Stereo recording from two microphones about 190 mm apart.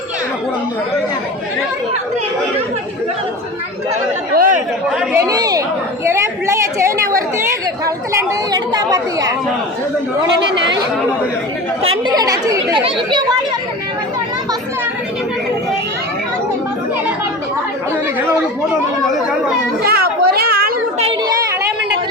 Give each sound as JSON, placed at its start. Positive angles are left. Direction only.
{"t": 4.4, "sound": "chatter", "side_deg": -45}
{"t": 5.1, "sound": "a woman's voice", "side_deg": -20}
{"t": 6.1, "sound": "chatter", "side_deg": -15}
{"t": 7.9, "sound": "a woman's voice", "side_deg": -20}
{"t": 11.8, "sound": "a woman's voice", "side_deg": -25}
{"t": 19.8, "sound": "a sound", "side_deg": -55}
{"t": 21.0, "sound": "children playing", "side_deg": -30}